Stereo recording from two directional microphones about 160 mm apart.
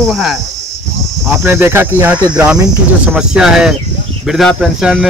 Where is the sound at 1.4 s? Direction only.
15° right (ahead or behind).